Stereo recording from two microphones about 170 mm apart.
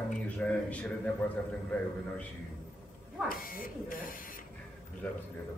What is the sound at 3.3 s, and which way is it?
Speech, 60° left (ahead or behind).